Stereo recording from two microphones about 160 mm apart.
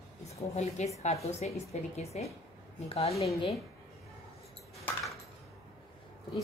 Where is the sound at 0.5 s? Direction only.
40° left (ahead or behind).